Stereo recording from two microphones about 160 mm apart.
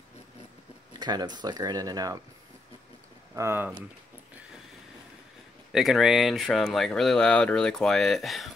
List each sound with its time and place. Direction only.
0.9 s speech: 25° right (ahead or behind)
3.3 s speech: 15° right (ahead or behind)
5.7 s speech: centre (ahead or behind)